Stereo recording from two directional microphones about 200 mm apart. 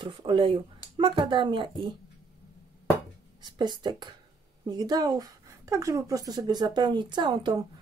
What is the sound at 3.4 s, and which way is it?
A woman's voice, 20° right (ahead or behind).